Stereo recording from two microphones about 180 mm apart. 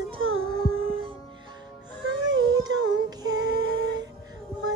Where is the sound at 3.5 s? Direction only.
90° right.